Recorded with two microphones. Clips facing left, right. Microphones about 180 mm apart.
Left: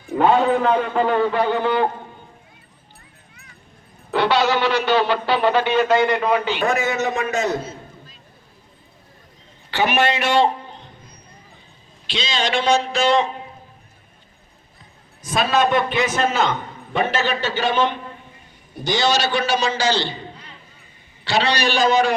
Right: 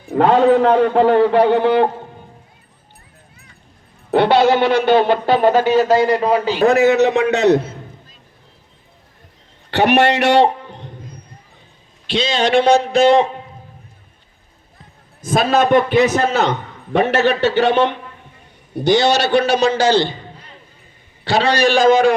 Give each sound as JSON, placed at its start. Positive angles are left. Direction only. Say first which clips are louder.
{"t": 0.2, "sound": "a man's voice", "louder": "right 5 dB", "side_deg": -70}
{"t": 4.1, "sound": "speech", "louder": "right 6 dB", "side_deg": -55}
{"t": 6.7, "sound": "a man's voice", "louder": "right 9 dB", "side_deg": -65}
{"t": 9.7, "sound": "a man's voice", "louder": "right 6 dB", "side_deg": -70}
{"t": 12.0, "sound": "a man's voice", "louder": "right 7 dB", "side_deg": -55}
{"t": 15.2, "sound": "speech", "louder": "right 4 dB", "side_deg": -50}
{"t": 17.1, "sound": "a man's voice", "louder": "right 7 dB", "side_deg": -70}